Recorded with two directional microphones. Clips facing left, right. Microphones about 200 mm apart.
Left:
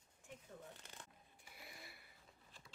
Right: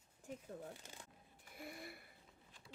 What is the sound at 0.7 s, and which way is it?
Speech, 10° right (ahead or behind).